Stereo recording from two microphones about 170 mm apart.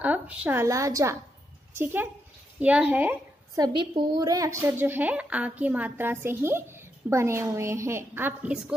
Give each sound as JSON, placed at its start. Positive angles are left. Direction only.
{"t": 0.0, "sound": "a woman's voice", "side_deg": -10}
{"t": 3.5, "sound": "a woman's voice", "side_deg": -25}